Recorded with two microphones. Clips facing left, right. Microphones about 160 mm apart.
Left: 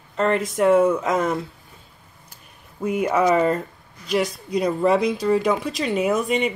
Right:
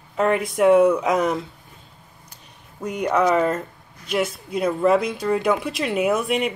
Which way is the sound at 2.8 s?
5° left (ahead or behind).